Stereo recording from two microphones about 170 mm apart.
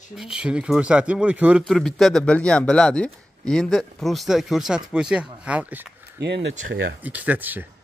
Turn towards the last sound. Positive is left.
turn(degrees=-10)  # may be behind; listen again after turning